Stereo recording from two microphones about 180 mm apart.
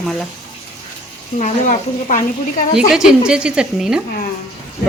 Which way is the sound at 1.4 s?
45° left (ahead or behind).